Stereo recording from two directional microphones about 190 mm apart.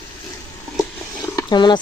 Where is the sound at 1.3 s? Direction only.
25° left (ahead or behind).